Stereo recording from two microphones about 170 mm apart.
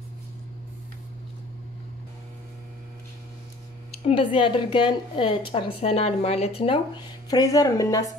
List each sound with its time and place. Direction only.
4.0 s a woman's voice: 30° left (ahead or behind)
7.2 s speech: 20° left (ahead or behind)